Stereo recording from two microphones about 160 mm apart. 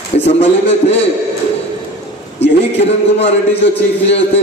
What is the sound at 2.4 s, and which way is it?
A man's voice, 40° left (ahead or behind).